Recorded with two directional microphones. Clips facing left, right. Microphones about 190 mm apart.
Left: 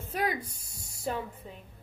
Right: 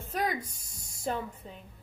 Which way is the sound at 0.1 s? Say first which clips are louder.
Even; 10° left (ahead or behind).